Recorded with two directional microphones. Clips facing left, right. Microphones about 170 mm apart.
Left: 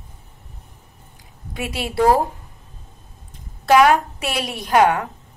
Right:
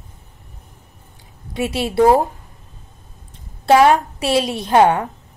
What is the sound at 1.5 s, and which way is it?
Speech, 25° right (ahead or behind).